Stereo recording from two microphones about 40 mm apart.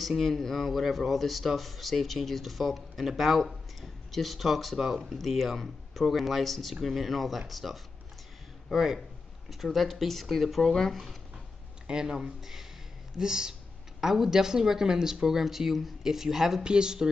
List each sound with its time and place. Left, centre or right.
0.0 s speech: centre
11.9 s speech: centre